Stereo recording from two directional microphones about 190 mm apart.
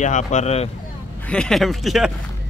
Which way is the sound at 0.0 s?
40° left (ahead or behind).